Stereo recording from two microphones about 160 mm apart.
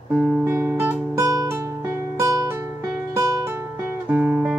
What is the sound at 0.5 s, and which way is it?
Music, 10° right (ahead or behind).